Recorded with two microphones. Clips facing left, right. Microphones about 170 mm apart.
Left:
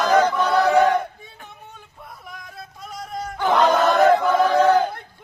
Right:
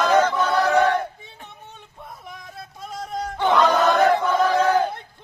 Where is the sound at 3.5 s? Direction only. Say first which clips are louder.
Left 1 dB; 40° left (ahead or behind).